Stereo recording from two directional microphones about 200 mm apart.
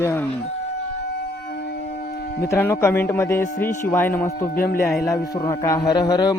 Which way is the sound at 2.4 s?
10° left (ahead or behind).